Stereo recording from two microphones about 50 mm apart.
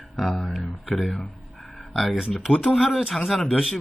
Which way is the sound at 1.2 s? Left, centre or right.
Centre.